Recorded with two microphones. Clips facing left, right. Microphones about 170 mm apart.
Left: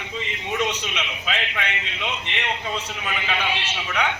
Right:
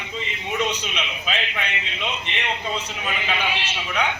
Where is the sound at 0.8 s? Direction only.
15° right (ahead or behind).